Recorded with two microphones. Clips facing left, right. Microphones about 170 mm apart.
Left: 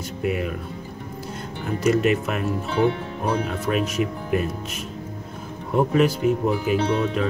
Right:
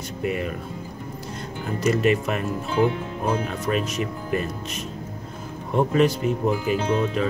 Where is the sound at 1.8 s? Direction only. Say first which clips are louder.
Left 1 dB; centre (ahead or behind).